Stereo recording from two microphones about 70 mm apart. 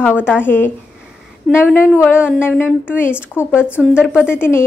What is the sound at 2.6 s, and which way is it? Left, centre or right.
Speech, left.